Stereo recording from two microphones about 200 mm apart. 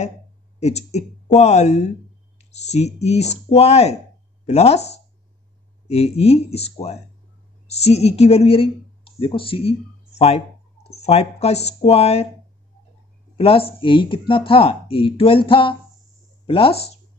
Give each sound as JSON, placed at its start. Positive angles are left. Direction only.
{"t": 0.6, "sound": "speech", "side_deg": 35}
{"t": 13.4, "sound": "speech", "side_deg": 30}